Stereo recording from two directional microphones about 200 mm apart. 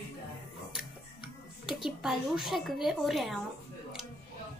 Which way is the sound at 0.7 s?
5° right (ahead or behind).